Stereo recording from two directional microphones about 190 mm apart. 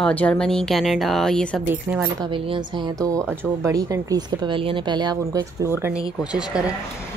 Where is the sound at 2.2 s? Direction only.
25° right (ahead or behind).